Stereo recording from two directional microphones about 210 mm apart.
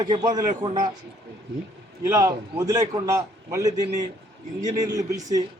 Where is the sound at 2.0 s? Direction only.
15° right (ahead or behind).